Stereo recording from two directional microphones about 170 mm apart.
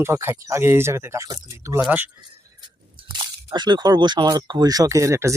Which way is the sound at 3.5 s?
25° right (ahead or behind).